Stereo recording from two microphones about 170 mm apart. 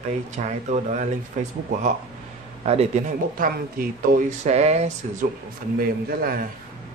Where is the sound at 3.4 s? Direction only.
60° right (ahead or behind).